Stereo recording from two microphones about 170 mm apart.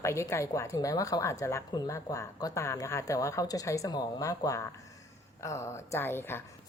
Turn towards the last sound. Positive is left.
turn(degrees=15)  # may be behind; listen again after turning